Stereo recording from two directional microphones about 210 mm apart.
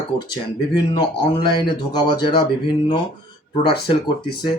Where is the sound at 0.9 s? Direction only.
20° left (ahead or behind).